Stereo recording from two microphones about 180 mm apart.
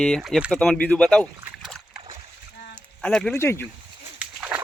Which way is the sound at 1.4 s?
5° right (ahead or behind).